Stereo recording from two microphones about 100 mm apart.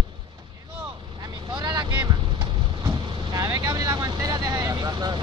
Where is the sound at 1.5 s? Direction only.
45° right (ahead or behind).